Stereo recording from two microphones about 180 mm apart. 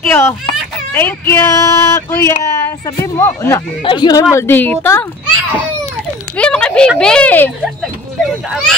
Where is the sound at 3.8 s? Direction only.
25° left (ahead or behind).